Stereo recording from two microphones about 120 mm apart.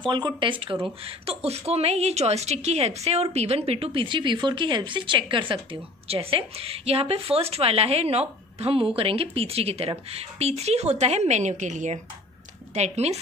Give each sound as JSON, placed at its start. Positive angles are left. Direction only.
{"t": 0.0, "sound": "speech", "side_deg": -40}
{"t": 1.0, "sound": "a woman's voice", "side_deg": -55}
{"t": 12.7, "sound": "a woman's voice", "side_deg": -65}